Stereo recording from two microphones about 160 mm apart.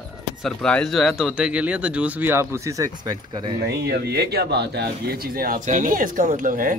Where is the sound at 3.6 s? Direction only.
85° right.